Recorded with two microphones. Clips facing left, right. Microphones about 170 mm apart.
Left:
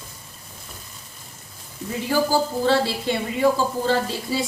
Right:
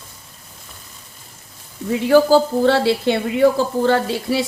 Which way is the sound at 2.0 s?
65° right (ahead or behind).